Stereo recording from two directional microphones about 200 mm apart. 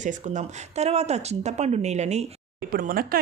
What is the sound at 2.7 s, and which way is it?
Speech, 45° right (ahead or behind).